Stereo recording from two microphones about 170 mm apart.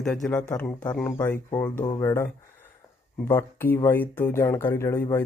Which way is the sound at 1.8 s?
25° left (ahead or behind).